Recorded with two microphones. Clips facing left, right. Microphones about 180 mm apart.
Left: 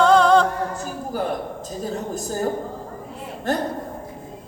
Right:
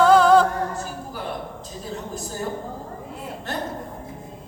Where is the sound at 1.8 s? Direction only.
45° left (ahead or behind).